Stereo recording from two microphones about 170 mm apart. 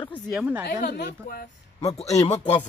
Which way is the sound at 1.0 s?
60° left (ahead or behind).